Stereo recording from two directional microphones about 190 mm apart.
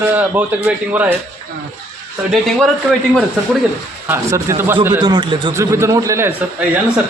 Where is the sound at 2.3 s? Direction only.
Centre (ahead or behind).